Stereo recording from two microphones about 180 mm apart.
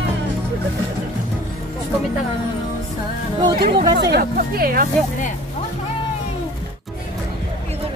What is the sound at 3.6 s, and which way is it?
Speech, 30° right (ahead or behind).